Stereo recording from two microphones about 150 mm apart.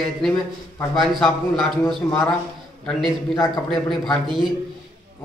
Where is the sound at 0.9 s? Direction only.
Centre (ahead or behind).